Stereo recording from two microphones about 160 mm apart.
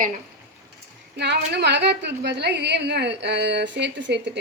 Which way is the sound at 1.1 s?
90° right.